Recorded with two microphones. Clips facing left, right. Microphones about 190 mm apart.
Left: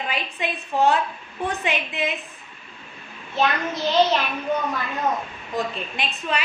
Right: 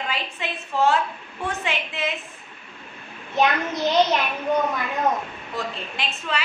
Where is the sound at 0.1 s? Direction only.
15° left (ahead or behind).